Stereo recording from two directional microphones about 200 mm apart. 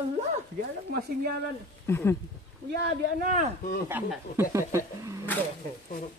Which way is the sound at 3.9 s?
10° right (ahead or behind).